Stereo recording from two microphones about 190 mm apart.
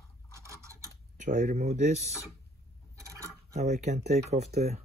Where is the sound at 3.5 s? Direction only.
40° right (ahead or behind).